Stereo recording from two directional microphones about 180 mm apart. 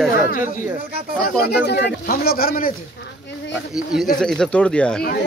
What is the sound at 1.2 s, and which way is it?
Speech, 60° left (ahead or behind).